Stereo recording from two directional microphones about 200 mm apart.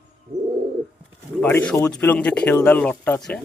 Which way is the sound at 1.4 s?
10° left (ahead or behind).